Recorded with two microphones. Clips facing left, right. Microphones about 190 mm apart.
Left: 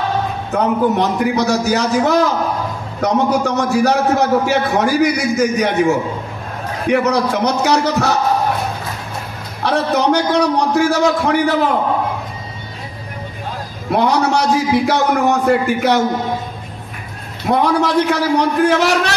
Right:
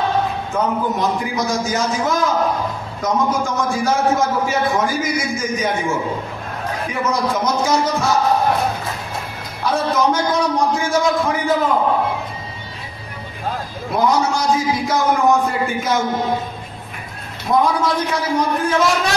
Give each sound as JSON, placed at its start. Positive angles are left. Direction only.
{"t": 0.5, "sound": "a man's voice", "side_deg": 70}
{"t": 9.6, "sound": "a man's voice", "side_deg": 70}
{"t": 13.9, "sound": "a man's voice", "side_deg": 70}
{"t": 17.5, "sound": "a man's voice", "side_deg": 70}